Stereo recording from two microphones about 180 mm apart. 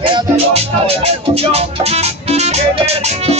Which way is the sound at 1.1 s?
35° right (ahead or behind).